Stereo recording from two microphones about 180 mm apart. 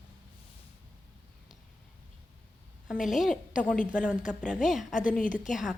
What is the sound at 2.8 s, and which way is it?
Speech, 5° right (ahead or behind).